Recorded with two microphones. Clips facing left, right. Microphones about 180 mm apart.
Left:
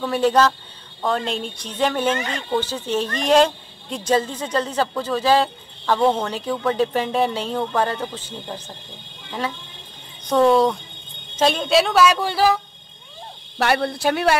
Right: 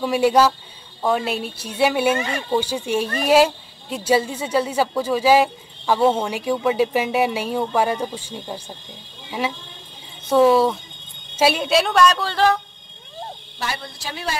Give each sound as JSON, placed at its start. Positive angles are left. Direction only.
{"t": 0.0, "sound": "speech", "side_deg": -10}
{"t": 10.2, "sound": "a woman's voice", "side_deg": -5}
{"t": 13.6, "sound": "speech", "side_deg": 65}